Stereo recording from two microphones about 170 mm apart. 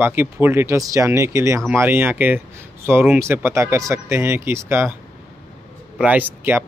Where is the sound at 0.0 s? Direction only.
10° right (ahead or behind).